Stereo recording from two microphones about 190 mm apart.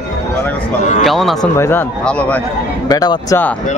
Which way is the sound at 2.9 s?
20° left (ahead or behind).